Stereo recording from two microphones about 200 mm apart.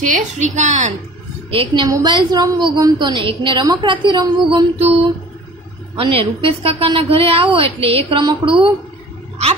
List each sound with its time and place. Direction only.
0.0 s a woman's voice: 40° right (ahead or behind)
1.5 s a woman's voice: 25° right (ahead or behind)
5.9 s a woman's voice: 25° right (ahead or behind)